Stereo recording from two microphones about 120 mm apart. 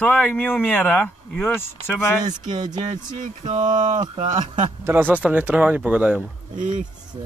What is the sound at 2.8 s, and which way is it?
Speech, 85° right.